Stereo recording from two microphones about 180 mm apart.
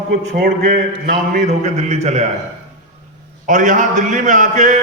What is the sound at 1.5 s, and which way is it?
Speech, 35° right (ahead or behind).